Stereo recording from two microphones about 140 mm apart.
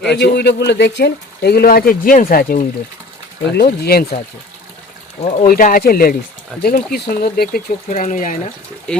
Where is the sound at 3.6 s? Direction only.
90° left.